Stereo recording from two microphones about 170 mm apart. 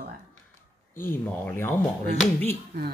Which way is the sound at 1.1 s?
10° left (ahead or behind).